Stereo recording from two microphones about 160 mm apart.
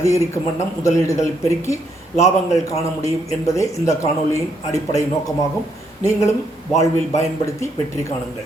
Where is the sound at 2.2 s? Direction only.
20° left (ahead or behind).